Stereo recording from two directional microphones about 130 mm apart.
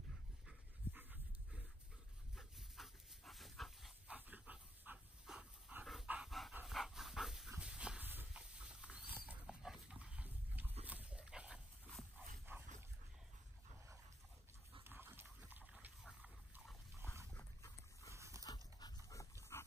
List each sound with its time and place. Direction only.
0.5 s dog: 10° right (ahead or behind)
4.1 s dog: 15° right (ahead or behind)
12.5 s dog: 20° right (ahead or behind)
14.8 s dog: 15° right (ahead or behind)
15.4 s a sound: 10° right (ahead or behind)
17.0 s dog: 20° right (ahead or behind)
17.6 s dog: 25° left (ahead or behind)
18.1 s dog: 25° right (ahead or behind)
18.4 s dog: 30° left (ahead or behind)